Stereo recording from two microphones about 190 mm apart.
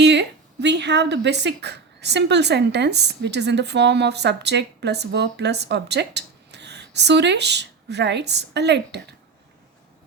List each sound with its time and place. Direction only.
0.0 s speech: 65° right (ahead or behind)